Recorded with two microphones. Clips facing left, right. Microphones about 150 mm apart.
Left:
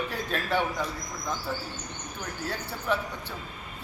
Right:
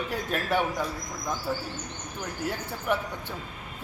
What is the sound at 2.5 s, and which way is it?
Speech, 15° right (ahead or behind).